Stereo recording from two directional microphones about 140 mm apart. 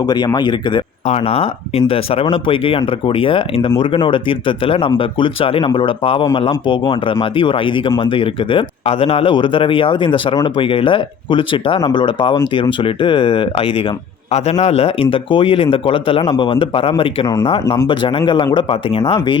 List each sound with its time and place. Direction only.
0.0 s speech: 30° left (ahead or behind)
1.0 s speech: 45° left (ahead or behind)